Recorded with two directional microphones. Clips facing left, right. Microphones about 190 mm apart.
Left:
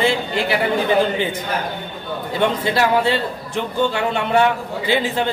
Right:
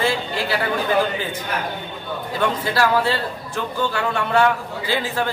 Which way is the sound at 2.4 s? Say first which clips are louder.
Left 2 dB; 20° left (ahead or behind).